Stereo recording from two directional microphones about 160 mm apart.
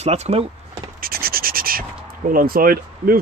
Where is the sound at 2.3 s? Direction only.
65° right (ahead or behind).